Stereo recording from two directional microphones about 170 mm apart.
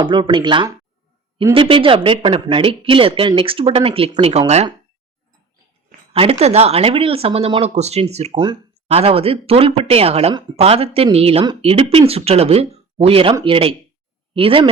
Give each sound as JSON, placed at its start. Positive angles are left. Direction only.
{"t": 0.0, "sound": "speech", "side_deg": -25}
{"t": 6.1, "sound": "speech", "side_deg": -35}